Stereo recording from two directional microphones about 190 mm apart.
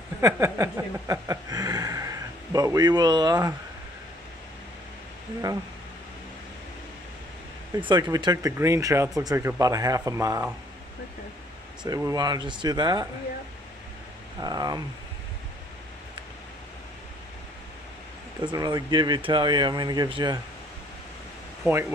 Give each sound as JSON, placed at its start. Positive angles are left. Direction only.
{"t": 0.2, "sound": "a sound", "side_deg": -15}
{"t": 7.7, "sound": "speech", "side_deg": -25}
{"t": 11.8, "sound": "speech", "side_deg": -20}
{"t": 14.4, "sound": "speech", "side_deg": -20}
{"t": 18.4, "sound": "speech", "side_deg": -25}